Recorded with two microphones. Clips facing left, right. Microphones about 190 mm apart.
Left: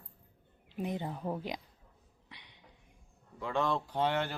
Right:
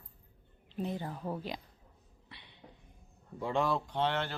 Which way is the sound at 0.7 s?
15° left (ahead or behind).